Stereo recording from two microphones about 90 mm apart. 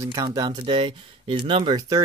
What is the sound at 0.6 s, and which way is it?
Speech, 75° right (ahead or behind).